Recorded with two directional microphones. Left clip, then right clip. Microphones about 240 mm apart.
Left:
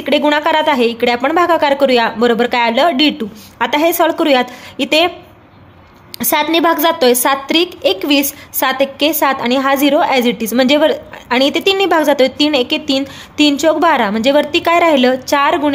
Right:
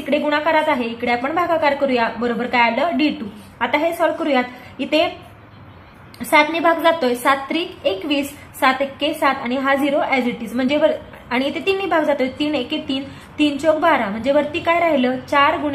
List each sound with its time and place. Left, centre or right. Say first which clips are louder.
0.0 s a woman's voice: left 6 dB; left
6.1 s a woman's voice: left 2 dB; left